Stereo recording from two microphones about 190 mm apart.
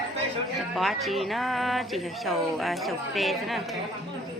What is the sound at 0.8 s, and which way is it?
Speech, centre (ahead or behind).